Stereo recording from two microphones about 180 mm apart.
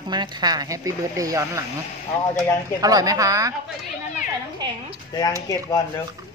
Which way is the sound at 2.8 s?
20° right (ahead or behind).